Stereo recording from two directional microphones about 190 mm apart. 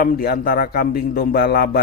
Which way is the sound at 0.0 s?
50° left (ahead or behind).